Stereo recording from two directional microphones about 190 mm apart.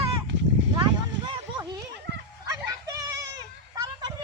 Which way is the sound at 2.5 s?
15° right (ahead or behind).